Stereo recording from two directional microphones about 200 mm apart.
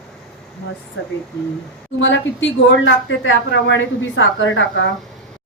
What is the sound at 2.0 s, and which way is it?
Speech, 65° left (ahead or behind).